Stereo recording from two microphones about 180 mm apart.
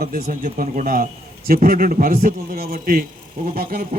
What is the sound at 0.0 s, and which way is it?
A man's voice, 45° right (ahead or behind).